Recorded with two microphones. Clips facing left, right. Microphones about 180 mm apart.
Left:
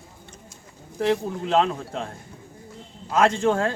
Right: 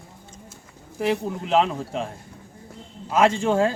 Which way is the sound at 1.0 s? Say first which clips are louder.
Left 1 dB; 5° right (ahead or behind).